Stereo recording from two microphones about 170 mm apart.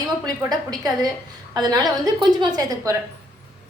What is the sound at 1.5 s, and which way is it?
A woman's voice, 25° right (ahead or behind).